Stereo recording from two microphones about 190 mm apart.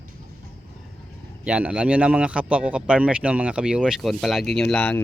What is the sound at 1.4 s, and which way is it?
Speech, 5° right (ahead or behind).